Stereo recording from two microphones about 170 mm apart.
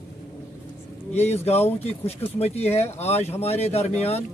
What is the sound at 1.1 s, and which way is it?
Speech, 40° left (ahead or behind).